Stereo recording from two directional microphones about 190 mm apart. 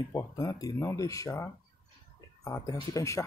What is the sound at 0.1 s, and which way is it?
Speech, 15° left (ahead or behind).